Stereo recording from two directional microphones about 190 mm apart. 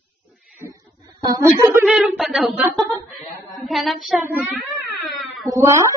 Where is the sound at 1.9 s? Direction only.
Centre (ahead or behind).